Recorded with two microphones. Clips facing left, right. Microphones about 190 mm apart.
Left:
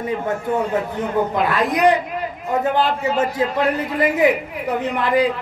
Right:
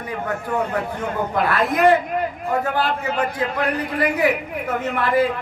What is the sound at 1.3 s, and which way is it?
A man's voice, 20° left (ahead or behind).